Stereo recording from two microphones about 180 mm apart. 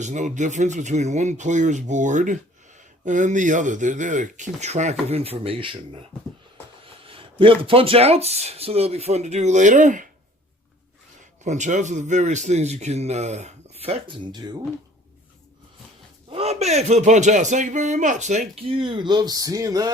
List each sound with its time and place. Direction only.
0.0 s a man's voice: 40° right (ahead or behind)
11.4 s a man's voice: 40° right (ahead or behind); by 14.6 s 25° right (ahead or behind)
16.3 s a man's voice: 35° right (ahead or behind); by 19.9 s 20° right (ahead or behind)